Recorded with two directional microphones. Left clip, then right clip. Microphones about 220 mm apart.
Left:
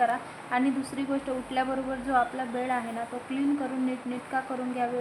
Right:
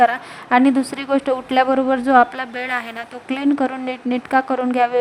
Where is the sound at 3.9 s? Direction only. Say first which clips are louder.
Right 12 dB; 50° right (ahead or behind).